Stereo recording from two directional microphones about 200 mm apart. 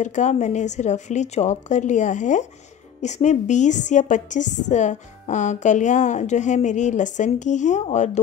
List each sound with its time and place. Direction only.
0.0 s a woman's voice: 35° left (ahead or behind)